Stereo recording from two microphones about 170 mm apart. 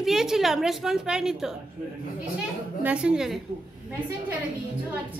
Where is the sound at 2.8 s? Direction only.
5° right (ahead or behind).